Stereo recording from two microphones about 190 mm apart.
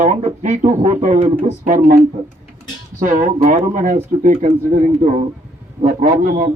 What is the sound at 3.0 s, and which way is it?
A man's voice, 45° right (ahead or behind).